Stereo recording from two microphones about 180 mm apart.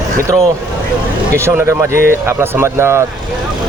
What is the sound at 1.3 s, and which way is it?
Speech, 15° right (ahead or behind).